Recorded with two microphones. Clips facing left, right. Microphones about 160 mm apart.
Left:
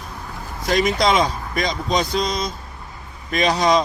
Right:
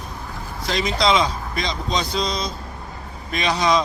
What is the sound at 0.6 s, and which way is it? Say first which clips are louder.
Speech: left 3 dB; 50° left (ahead or behind).